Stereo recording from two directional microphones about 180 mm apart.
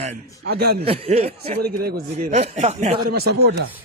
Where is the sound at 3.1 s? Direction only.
60° right (ahead or behind).